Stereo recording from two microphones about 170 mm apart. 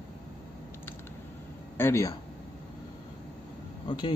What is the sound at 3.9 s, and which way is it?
Speech, 30° left (ahead or behind).